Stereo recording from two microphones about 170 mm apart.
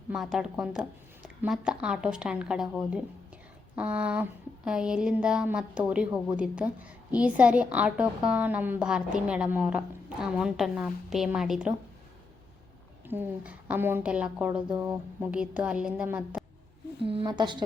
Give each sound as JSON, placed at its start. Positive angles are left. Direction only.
{"t": 0.1, "sound": "a woman's voice", "side_deg": -5}
{"t": 13.1, "sound": "a woman's voice", "side_deg": -10}
{"t": 17.1, "sound": "a woman's voice", "side_deg": -30}